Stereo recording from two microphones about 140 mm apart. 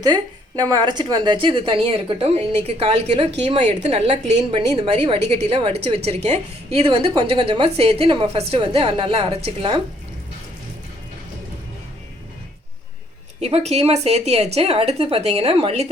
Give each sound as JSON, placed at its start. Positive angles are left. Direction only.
{"t": 0.0, "sound": "speech", "side_deg": -30}
{"t": 13.4, "sound": "a woman's voice", "side_deg": -50}